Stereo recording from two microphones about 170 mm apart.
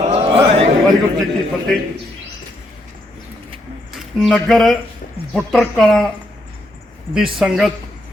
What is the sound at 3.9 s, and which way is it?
Speech, centre (ahead or behind).